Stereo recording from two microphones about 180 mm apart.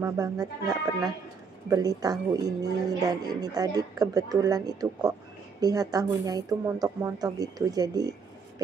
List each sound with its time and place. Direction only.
0.0 s a woman's voice: 20° right (ahead or behind)